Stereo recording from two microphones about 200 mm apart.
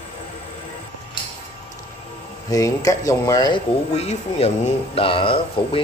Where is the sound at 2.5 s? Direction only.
15° left (ahead or behind).